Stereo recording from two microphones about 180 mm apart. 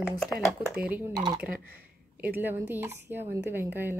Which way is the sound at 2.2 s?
10° right (ahead or behind).